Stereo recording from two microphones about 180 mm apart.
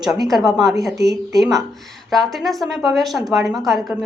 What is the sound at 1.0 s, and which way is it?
Speech, 65° right (ahead or behind).